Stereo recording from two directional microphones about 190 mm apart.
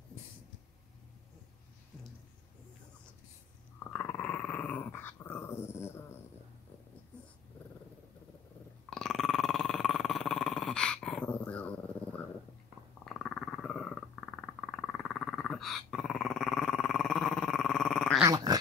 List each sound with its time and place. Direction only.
3.8 s dog: 10° left (ahead or behind)
8.9 s burping: centre (ahead or behind)
13.0 s wild animals: centre (ahead or behind)
14.4 s dog: 5° left (ahead or behind)
18.2 s dog: 20° right (ahead or behind)